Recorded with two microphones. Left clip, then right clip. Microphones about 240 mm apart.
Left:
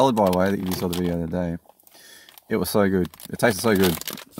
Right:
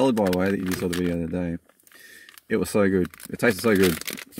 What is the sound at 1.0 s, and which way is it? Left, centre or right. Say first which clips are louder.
Speech: left 1 dB; left.